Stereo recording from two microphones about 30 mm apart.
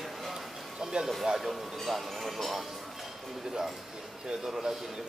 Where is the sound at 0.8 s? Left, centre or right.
Right.